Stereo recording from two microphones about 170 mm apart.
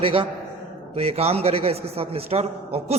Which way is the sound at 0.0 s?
30° right (ahead or behind).